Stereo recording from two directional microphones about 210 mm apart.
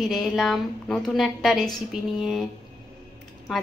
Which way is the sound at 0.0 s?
Centre (ahead or behind).